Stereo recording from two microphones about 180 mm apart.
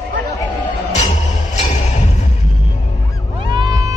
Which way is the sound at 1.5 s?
40° left (ahead or behind).